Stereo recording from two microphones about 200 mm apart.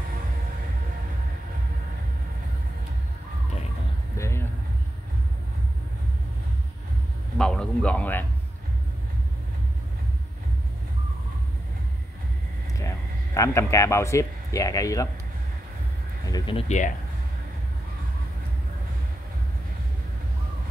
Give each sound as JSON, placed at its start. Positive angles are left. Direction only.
{"t": 4.2, "sound": "a sound", "side_deg": 15}
{"t": 7.3, "sound": "a man's voice", "side_deg": 5}
{"t": 12.7, "sound": "speech", "side_deg": 15}
{"t": 16.3, "sound": "speech", "side_deg": 20}